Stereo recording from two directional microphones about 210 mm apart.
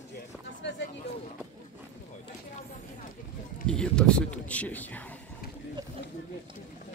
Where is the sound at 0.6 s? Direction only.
60° left (ahead or behind).